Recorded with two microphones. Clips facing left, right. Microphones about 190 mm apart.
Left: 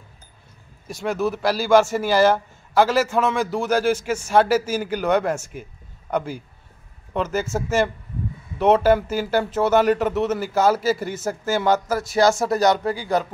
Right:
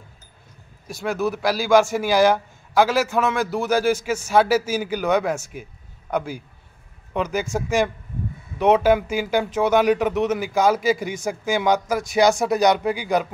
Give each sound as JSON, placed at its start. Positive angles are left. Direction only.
{"t": 0.8, "sound": "a man's voice", "side_deg": -10}
{"t": 8.5, "sound": "a man's voice", "side_deg": -10}
{"t": 11.1, "sound": "a man's voice", "side_deg": 5}
{"t": 11.5, "sound": "a man's voice", "side_deg": -15}